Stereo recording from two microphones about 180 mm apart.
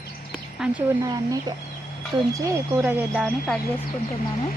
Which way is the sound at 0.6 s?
5° right (ahead or behind).